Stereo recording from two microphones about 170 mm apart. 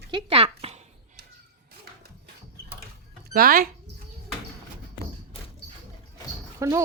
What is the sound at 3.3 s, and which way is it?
Speech, 60° right (ahead or behind).